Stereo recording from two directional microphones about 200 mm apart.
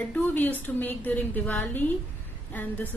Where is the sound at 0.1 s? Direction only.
10° left (ahead or behind).